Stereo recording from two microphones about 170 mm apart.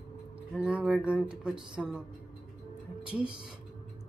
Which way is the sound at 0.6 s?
5° right (ahead or behind).